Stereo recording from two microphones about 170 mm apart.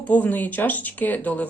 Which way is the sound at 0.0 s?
10° left (ahead or behind).